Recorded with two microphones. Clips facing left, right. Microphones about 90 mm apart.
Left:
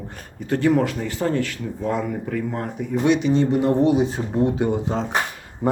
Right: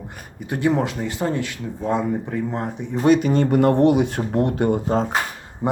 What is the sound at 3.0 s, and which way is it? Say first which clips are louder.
Speech: right 2 dB; 45° right (ahead or behind).